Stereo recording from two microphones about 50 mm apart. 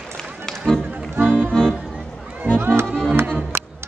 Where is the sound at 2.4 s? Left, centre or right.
Right.